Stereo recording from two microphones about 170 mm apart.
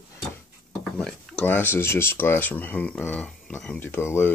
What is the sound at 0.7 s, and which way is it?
Speech, 5° left (ahead or behind).